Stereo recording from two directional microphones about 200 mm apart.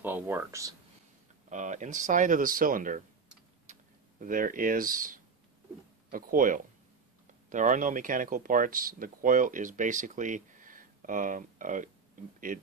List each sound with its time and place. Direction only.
0.0 s speech: 10° right (ahead or behind)
1.5 s speech: 40° right (ahead or behind)
3.7 s a sound: 35° right (ahead or behind)
4.2 s speech: 45° right (ahead or behind)